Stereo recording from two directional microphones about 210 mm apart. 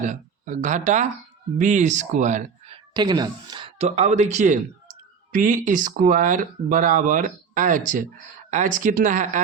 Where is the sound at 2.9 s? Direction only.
20° right (ahead or behind).